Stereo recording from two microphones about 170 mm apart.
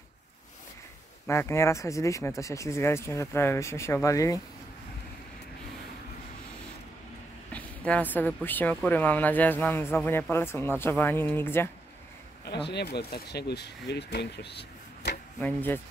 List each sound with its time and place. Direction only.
1.2 s speech: 15° left (ahead or behind)
7.5 s speech: 10° left (ahead or behind)
12.4 s speech: 80° left
15.4 s speech: 10° left (ahead or behind)